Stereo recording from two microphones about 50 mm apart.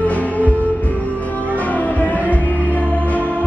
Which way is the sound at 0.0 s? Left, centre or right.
Left.